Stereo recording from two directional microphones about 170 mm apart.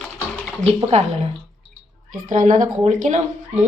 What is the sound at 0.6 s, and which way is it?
Speech, 40° right (ahead or behind).